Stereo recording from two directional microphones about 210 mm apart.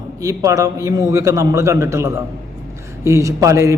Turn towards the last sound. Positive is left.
turn(degrees=-15)  # may be behind; listen again after turning